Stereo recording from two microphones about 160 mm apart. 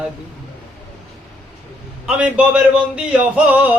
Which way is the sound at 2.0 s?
5° right (ahead or behind).